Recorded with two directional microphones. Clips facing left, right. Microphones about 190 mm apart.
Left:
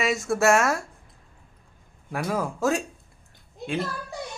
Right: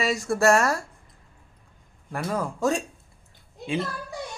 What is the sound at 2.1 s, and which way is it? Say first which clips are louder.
Speech: left 1 dB; 5° left (ahead or behind).